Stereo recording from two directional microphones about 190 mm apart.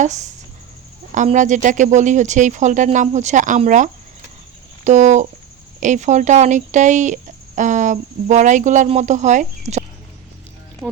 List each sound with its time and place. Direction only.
0.0 s speech: 40° right (ahead or behind)